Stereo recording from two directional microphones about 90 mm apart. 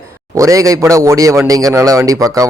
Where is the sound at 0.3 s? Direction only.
35° right (ahead or behind).